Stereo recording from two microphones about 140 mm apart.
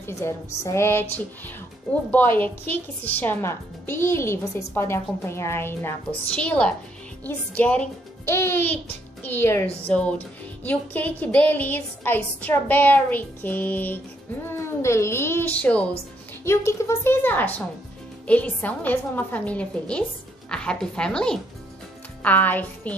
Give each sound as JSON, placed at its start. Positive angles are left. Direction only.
{"t": 0.0, "sound": "a woman's voice", "side_deg": 20}